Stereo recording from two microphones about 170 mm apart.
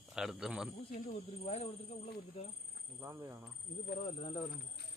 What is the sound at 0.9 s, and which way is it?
Speech, 45° left (ahead or behind).